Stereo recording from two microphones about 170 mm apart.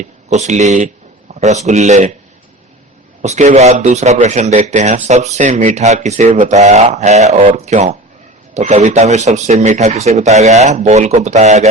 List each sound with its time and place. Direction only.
0.0 s speech: 40° right (ahead or behind)
3.2 s speech: 45° right (ahead or behind)